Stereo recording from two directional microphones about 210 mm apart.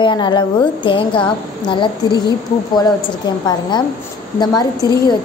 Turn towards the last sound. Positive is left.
turn(degrees=20)  # may be behind; listen again after turning